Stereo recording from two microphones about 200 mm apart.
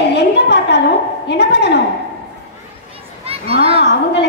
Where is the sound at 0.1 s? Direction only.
55° left (ahead or behind).